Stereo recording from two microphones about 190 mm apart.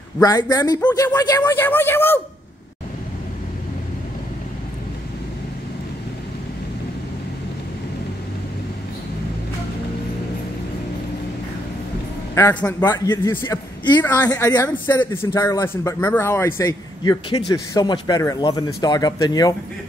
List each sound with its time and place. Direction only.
0.2 s a man's voice: 20° left (ahead or behind)
12.8 s a man's voice: 20° left (ahead or behind)